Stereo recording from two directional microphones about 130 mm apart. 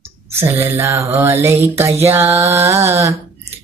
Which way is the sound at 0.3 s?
20° right (ahead or behind).